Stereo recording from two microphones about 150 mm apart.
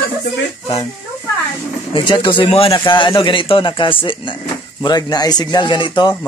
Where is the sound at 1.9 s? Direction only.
30° left (ahead or behind).